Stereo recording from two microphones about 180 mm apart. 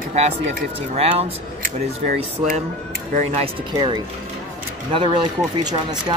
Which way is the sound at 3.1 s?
40° right (ahead or behind).